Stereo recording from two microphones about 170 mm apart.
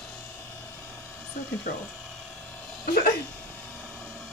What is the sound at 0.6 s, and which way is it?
Vehicle, 15° left (ahead or behind).